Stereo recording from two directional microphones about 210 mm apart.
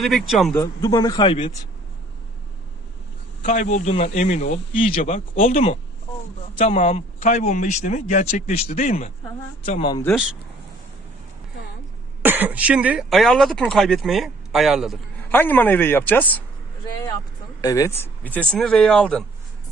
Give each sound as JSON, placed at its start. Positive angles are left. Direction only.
{"t": 0.0, "sound": "speech", "side_deg": 0}
{"t": 0.5, "sound": "speech", "side_deg": 15}
{"t": 3.4, "sound": "speech", "side_deg": 35}
{"t": 12.2, "sound": "speech", "side_deg": -10}
{"t": 17.6, "sound": "speech", "side_deg": 15}